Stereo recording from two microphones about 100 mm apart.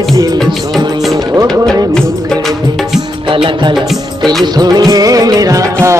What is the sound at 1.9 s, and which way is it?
Music, 5° left (ahead or behind).